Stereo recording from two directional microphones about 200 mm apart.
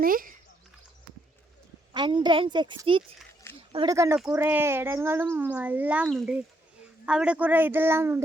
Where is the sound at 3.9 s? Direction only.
15° right (ahead or behind).